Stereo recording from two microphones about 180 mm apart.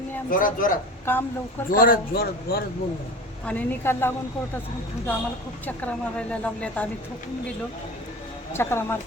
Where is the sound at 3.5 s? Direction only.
10° left (ahead or behind).